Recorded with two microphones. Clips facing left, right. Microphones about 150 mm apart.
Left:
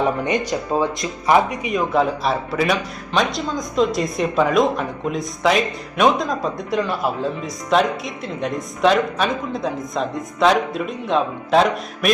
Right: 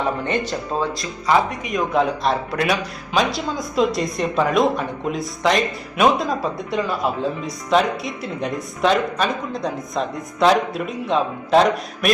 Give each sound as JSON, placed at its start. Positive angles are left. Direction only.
{"t": 0.3, "sound": "speech", "side_deg": 15}
{"t": 1.7, "sound": "speech", "side_deg": 0}